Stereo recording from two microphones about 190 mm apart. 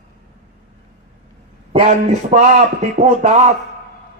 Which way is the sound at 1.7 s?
35° right (ahead or behind).